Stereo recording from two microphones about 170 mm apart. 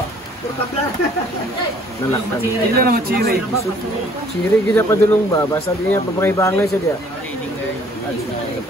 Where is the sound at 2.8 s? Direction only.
65° right (ahead or behind).